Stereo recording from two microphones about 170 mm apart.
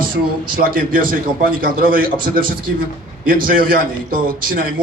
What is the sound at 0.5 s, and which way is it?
A man's voice, 55° right (ahead or behind).